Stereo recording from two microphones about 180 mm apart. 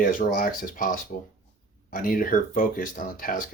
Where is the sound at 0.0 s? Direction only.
50° left (ahead or behind).